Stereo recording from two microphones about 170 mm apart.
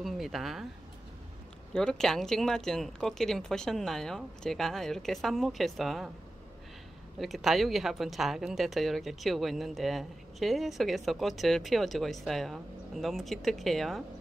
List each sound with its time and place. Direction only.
0.0 s speech: centre (ahead or behind)
1.7 s a woman's voice: 5° left (ahead or behind)
7.2 s a woman's voice: centre (ahead or behind)